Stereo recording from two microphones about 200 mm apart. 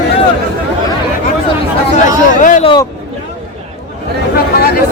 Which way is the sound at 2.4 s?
40° left (ahead or behind).